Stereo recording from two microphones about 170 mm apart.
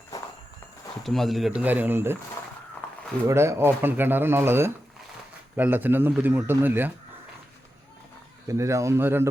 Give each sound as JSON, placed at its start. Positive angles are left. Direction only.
{"t": 1.0, "sound": "speech", "side_deg": 0}
{"t": 3.2, "sound": "speech", "side_deg": -15}
{"t": 8.4, "sound": "speech", "side_deg": -15}